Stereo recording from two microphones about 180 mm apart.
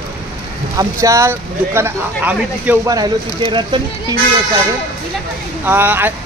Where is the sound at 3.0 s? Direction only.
25° right (ahead or behind).